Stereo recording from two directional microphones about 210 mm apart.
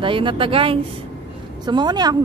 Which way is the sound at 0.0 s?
25° right (ahead or behind).